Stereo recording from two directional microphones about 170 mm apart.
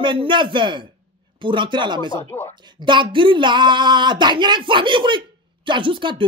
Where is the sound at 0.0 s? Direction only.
30° right (ahead or behind).